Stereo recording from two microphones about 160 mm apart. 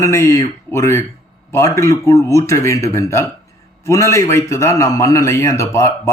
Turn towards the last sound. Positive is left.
turn(degrees=20)  # may be behind; listen again after turning